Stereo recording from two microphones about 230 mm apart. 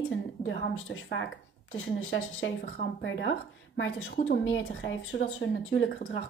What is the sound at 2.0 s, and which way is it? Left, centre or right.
A woman's voice, left.